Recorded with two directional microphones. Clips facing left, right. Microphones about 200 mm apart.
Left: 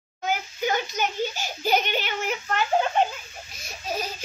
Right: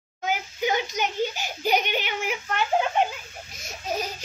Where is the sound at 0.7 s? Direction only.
15° right (ahead or behind).